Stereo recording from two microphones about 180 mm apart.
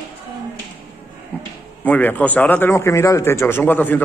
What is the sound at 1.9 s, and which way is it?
A man's voice, 10° left (ahead or behind).